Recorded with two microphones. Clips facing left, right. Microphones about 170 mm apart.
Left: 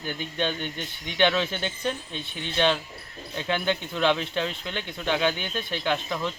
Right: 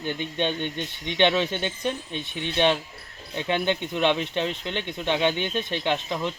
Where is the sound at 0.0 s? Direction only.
20° right (ahead or behind).